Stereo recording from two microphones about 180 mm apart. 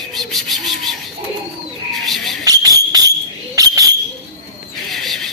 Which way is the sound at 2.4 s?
20° right (ahead or behind).